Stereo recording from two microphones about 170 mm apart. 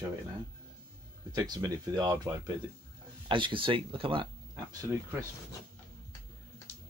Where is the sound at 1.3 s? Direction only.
25° right (ahead or behind).